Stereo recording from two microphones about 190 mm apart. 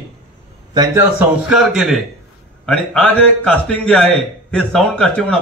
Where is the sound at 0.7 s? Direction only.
15° right (ahead or behind); by 5.3 s 5° left (ahead or behind).